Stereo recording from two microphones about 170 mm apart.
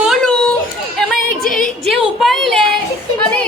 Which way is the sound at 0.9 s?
Centre (ahead or behind).